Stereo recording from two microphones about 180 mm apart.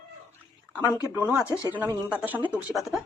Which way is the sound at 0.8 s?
20° left (ahead or behind).